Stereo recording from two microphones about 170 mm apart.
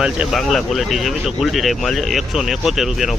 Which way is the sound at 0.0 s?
5° right (ahead or behind).